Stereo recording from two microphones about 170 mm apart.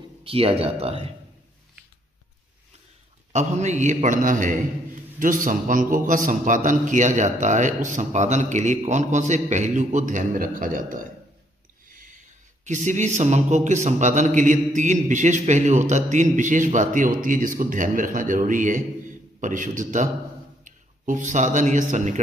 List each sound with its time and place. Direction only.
0.2 s speech: 35° right (ahead or behind)
3.3 s speech: 40° right (ahead or behind)
12.6 s a man's voice: 45° right (ahead or behind)